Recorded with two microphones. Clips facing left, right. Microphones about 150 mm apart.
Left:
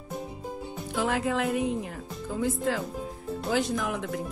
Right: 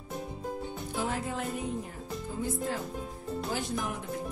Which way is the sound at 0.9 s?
90° left.